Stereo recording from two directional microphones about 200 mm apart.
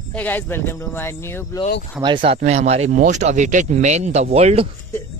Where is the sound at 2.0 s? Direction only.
25° right (ahead or behind).